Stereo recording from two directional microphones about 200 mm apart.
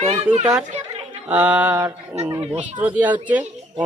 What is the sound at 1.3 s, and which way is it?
Speech, 5° right (ahead or behind).